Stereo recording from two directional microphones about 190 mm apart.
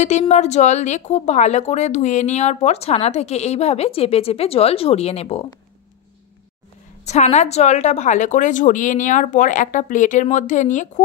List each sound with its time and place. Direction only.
0.0 s speech: 35° left (ahead or behind)
7.1 s speech: 35° left (ahead or behind)